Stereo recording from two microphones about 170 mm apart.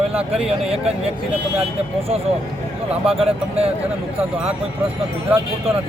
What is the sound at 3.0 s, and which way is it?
Speech, 35° right (ahead or behind).